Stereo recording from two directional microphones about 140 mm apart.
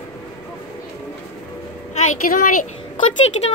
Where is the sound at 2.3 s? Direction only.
90° left.